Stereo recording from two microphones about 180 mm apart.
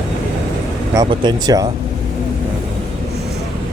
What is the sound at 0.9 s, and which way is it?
Speech, 20° right (ahead or behind).